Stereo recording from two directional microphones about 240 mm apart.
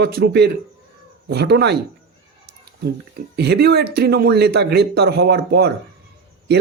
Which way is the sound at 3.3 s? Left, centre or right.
Right.